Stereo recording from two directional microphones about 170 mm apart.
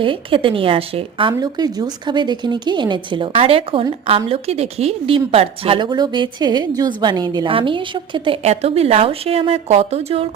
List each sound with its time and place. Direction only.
0.0 s a woman's voice: 30° right (ahead or behind)